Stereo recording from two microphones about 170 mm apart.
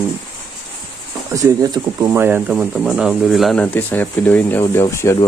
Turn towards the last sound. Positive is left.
turn(degrees=15)  # may be behind; listen again after turning